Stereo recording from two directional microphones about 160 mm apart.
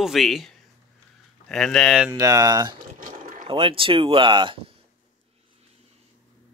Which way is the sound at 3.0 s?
60° right (ahead or behind).